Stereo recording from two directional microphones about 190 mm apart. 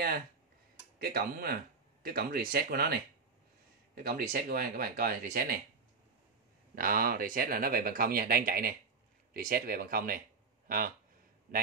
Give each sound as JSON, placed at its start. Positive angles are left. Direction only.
{"t": 0.9, "sound": "speech", "side_deg": -50}
{"t": 4.0, "sound": "speech", "side_deg": -50}
{"t": 6.7, "sound": "speech", "side_deg": -50}